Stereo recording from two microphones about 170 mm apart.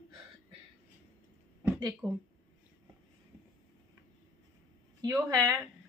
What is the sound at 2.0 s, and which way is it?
Speech, 10° right (ahead or behind).